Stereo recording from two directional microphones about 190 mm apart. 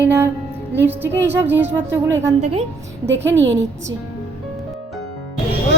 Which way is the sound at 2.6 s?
70° right (ahead or behind).